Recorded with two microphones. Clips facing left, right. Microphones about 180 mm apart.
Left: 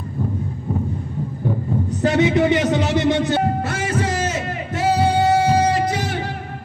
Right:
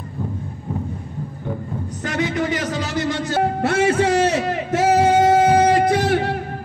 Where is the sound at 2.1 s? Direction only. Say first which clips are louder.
Left 5 dB; 20° left (ahead or behind).